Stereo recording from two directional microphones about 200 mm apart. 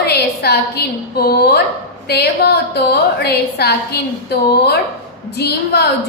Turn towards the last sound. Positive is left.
turn(degrees=55)  # may be behind; listen again after turning